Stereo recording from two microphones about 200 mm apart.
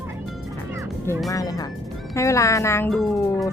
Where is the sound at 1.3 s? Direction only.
15° left (ahead or behind).